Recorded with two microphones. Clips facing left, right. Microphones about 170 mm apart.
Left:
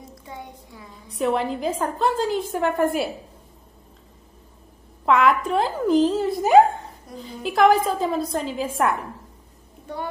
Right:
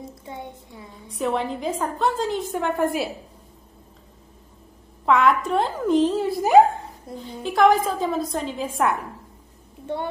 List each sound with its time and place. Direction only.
0.2 s a woman's voice: 25° right (ahead or behind)
1.1 s a woman's voice: centre (ahead or behind)
5.0 s a woman's voice: centre (ahead or behind)
9.9 s a woman's voice: 25° right (ahead or behind)